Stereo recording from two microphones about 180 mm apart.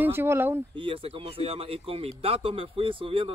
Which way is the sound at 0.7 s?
30° right (ahead or behind).